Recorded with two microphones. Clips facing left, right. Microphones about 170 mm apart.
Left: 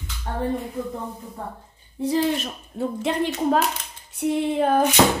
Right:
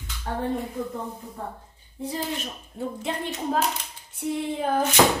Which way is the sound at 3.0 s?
80° left.